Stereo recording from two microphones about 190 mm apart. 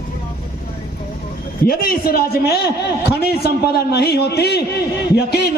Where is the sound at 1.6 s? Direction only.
50° left (ahead or behind).